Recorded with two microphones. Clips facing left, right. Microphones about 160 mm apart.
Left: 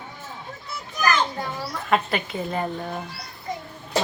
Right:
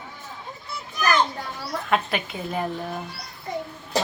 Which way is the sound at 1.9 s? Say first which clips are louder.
Left 2 dB; centre (ahead or behind).